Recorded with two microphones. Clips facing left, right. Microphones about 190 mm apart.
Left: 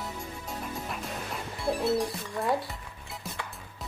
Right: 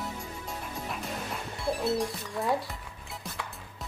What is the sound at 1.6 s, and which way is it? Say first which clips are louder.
Speech: left 2 dB; centre (ahead or behind).